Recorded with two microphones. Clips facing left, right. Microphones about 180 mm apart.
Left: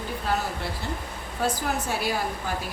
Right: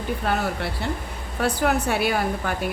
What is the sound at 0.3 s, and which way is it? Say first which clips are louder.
A woman's voice: right 2 dB; 65° right (ahead or behind).